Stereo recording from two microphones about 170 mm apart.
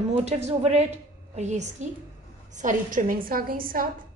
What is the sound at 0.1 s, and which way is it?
A woman's voice, 40° right (ahead or behind).